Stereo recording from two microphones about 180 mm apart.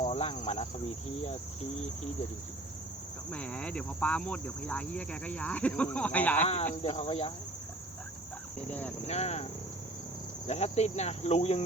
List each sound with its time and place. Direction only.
0.0 s speech: 30° left (ahead or behind)
3.3 s speech: 5° left (ahead or behind)
6.8 s speech: 35° left (ahead or behind)
9.0 s speech: 35° left (ahead or behind)